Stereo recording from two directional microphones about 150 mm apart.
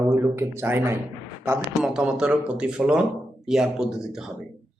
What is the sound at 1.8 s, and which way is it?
A man's voice, 5° right (ahead or behind).